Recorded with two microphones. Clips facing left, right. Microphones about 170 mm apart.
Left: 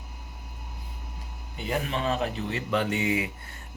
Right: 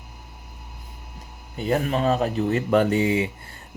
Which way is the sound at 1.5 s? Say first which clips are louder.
Right 7 dB; 40° right (ahead or behind).